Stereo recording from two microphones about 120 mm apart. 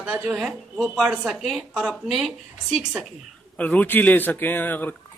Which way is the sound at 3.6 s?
10° left (ahead or behind).